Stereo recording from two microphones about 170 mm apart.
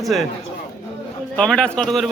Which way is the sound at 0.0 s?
Centre (ahead or behind).